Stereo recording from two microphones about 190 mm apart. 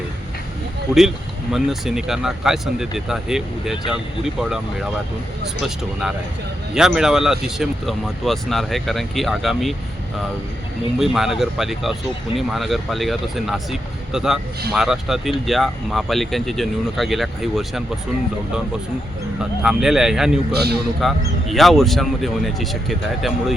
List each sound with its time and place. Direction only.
0.9 s speech: centre (ahead or behind)
10.9 s speech: centre (ahead or behind)
19.6 s speech: 5° right (ahead or behind)
20.5 s a man's voice: 60° right (ahead or behind)
21.0 s speech: centre (ahead or behind)